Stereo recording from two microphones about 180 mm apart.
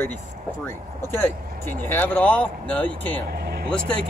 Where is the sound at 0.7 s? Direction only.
15° left (ahead or behind).